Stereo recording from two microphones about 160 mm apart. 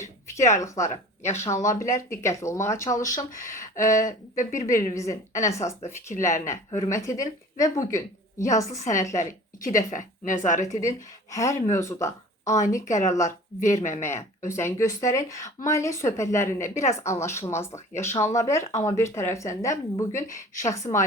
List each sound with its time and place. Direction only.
1.3 s a woman's voice: 15° left (ahead or behind)
3.3 s speech: 55° left (ahead or behind)
4.5 s a woman's voice: 20° left (ahead or behind)
9.6 s a woman's voice: 55° left (ahead or behind)
10.7 s speech: 20° left (ahead or behind)
12.5 s a woman's voice: 50° left (ahead or behind)
13.1 s speech: 20° left (ahead or behind)
13.6 s a woman's voice: 50° left (ahead or behind)
14.2 s a woman's voice: 15° left (ahead or behind)
18.6 s a woman's voice: 50° left (ahead or behind)
18.9 s a woman's voice: 15° left (ahead or behind)